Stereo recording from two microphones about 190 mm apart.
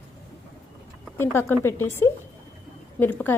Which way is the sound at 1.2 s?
10° left (ahead or behind).